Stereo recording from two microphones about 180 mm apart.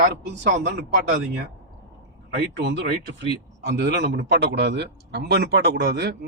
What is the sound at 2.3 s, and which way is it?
A man's voice, 70° right (ahead or behind).